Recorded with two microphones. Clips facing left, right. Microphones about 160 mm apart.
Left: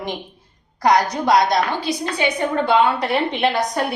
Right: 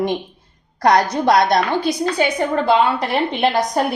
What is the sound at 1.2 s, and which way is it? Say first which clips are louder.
Speech: right 2 dB; 60° right (ahead or behind).